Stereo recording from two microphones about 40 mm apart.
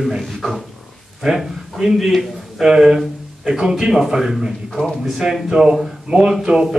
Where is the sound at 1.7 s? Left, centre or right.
Centre.